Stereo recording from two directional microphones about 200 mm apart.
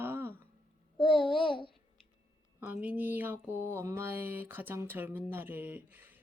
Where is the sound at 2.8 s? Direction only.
10° right (ahead or behind).